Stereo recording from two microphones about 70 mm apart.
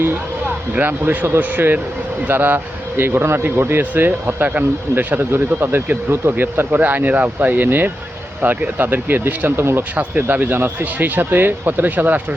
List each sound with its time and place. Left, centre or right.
0.7 s speech: right